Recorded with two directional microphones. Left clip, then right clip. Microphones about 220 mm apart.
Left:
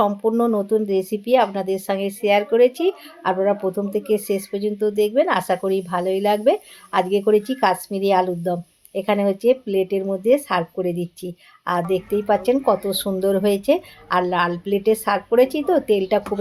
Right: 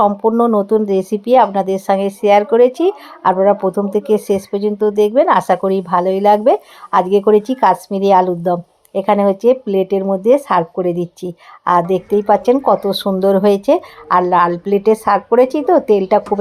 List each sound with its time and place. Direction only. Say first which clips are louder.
0.0 s speech: right 6 dB; 15° right (ahead or behind)